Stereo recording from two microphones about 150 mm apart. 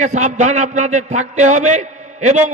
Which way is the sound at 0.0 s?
55° right (ahead or behind).